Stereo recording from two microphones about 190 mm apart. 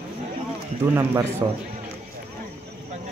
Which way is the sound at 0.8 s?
15° right (ahead or behind).